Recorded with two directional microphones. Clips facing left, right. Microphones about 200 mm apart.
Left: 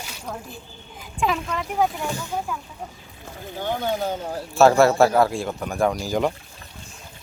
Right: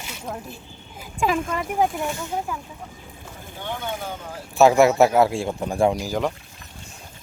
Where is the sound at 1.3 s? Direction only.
50° right (ahead or behind).